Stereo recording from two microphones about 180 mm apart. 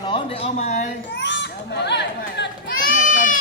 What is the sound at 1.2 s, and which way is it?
A child's voice, 75° left (ahead or behind).